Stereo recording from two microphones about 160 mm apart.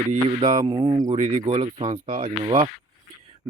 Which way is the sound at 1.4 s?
30° right (ahead or behind).